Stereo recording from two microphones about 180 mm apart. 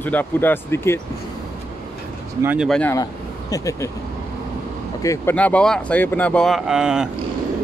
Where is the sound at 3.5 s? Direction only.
20° left (ahead or behind).